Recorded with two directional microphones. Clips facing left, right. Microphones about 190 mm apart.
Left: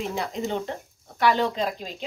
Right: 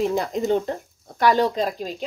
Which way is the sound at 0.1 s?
45° right (ahead or behind).